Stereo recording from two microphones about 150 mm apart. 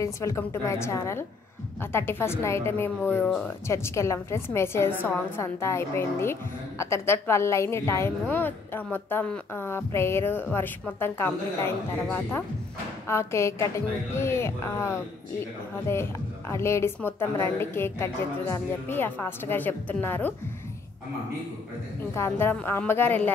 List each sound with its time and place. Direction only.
0.0 s a woman's voice: 20° left (ahead or behind)
22.1 s a woman's voice: 15° left (ahead or behind)